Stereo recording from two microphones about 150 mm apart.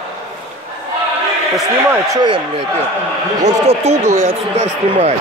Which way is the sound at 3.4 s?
50° right (ahead or behind).